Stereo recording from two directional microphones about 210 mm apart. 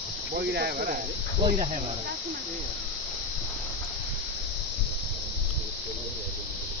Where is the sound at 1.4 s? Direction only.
30° right (ahead or behind).